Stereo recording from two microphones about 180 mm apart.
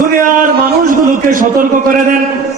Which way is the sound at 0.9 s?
50° right (ahead or behind).